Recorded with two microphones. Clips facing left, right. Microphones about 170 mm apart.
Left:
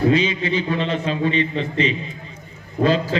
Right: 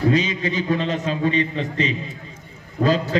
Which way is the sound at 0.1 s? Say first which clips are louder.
Left 2 dB; 40° right (ahead or behind).